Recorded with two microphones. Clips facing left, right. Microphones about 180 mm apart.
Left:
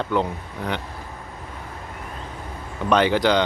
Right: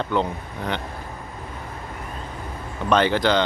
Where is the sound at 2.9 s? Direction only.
10° left (ahead or behind).